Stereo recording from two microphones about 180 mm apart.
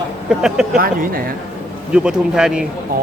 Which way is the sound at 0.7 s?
50° right (ahead or behind).